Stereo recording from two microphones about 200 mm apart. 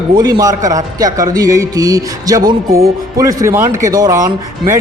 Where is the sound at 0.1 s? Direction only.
20° right (ahead or behind).